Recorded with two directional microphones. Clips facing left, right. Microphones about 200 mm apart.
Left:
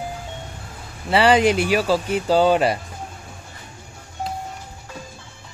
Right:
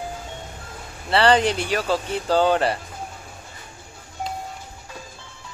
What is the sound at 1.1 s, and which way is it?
Speech, 10° left (ahead or behind).